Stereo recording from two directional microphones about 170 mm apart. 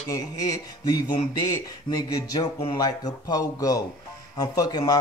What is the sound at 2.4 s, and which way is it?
Speech, 25° left (ahead or behind).